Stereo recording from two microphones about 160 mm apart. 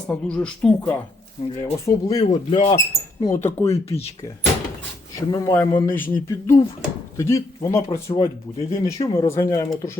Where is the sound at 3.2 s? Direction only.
15° left (ahead or behind).